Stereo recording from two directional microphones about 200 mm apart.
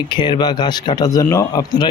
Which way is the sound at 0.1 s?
20° left (ahead or behind).